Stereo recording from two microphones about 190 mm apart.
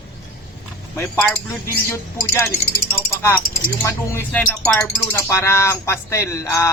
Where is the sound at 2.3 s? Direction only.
15° left (ahead or behind).